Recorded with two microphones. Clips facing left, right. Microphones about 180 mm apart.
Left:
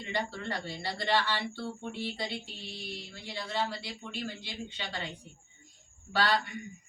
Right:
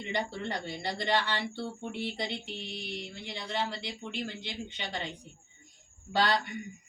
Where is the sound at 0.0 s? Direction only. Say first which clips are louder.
Right 1 dB; 20° right (ahead or behind).